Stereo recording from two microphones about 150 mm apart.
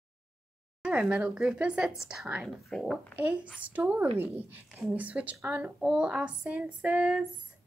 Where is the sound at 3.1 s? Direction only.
10° right (ahead or behind).